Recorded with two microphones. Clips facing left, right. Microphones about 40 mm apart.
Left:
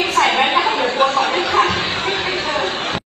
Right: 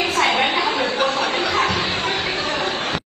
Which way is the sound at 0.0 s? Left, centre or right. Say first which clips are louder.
Left 3 dB; left.